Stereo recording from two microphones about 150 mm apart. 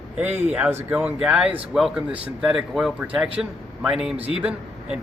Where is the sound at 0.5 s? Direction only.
10° right (ahead or behind).